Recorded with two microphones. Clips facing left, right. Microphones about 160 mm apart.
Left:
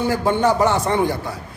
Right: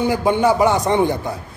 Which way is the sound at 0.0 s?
15° right (ahead or behind).